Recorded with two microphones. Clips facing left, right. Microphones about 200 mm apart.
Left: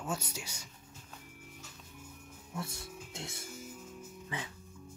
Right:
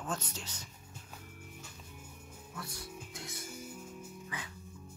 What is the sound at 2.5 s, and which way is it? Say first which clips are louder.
Speech: left 4 dB; 25° left (ahead or behind).